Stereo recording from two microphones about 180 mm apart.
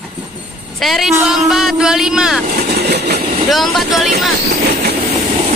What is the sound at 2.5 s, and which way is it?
Vehicle, 65° right (ahead or behind).